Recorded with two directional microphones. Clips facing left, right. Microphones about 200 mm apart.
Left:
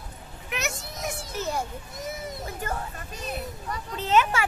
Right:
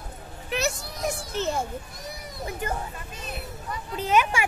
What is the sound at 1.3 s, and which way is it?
Speech, 25° right (ahead or behind).